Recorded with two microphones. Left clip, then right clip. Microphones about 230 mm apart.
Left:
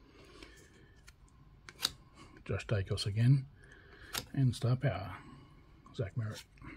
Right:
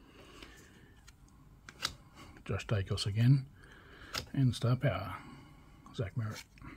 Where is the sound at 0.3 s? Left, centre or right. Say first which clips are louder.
Right 1 dB; centre.